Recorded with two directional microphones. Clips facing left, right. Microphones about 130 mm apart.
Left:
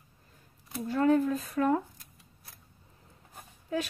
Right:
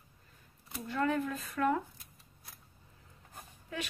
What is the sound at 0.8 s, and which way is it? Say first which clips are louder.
Speech: left 7 dB; 40° left (ahead or behind).